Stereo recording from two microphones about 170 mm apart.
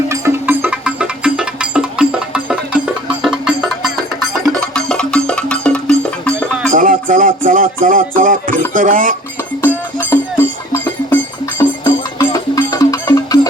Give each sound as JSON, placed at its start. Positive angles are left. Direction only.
{"t": 0.1, "sound": "music", "side_deg": -15}
{"t": 6.7, "sound": "music", "side_deg": -55}
{"t": 8.7, "sound": "speech", "side_deg": -55}
{"t": 10.0, "sound": "music", "side_deg": 10}